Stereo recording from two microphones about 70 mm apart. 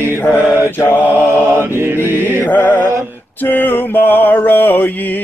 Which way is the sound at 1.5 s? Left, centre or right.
Right.